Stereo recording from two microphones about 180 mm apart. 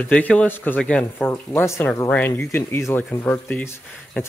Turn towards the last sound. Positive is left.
turn(degrees=10)  # may be behind; listen again after turning